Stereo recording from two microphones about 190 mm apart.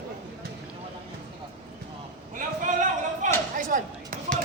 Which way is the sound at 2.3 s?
40° right (ahead or behind).